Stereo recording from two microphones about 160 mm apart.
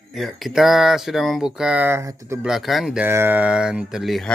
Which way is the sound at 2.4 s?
Centre (ahead or behind).